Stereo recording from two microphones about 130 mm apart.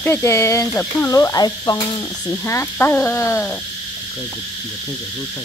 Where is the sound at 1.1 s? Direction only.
25° left (ahead or behind).